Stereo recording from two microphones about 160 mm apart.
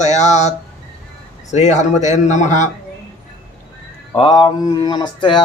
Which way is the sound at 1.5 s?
45° left (ahead or behind).